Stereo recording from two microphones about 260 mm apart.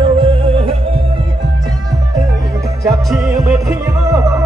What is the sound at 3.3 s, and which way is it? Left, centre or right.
Music, centre.